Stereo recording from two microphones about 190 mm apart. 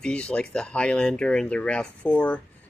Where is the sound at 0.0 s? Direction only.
5° left (ahead or behind).